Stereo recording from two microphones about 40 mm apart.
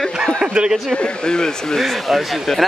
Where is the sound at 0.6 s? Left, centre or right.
Centre.